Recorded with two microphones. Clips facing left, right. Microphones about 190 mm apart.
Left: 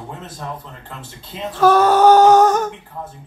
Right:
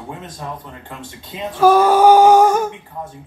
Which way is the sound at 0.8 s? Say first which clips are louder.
Right 2 dB; 10° right (ahead or behind).